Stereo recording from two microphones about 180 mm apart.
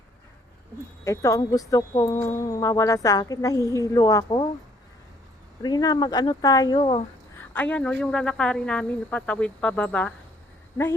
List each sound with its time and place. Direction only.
1.0 s speech: 15° left (ahead or behind)
5.6 s speech: 20° left (ahead or behind)
7.5 s speech: 10° left (ahead or behind)